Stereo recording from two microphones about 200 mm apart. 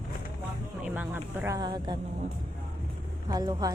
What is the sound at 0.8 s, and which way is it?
A man's voice, 10° right (ahead or behind).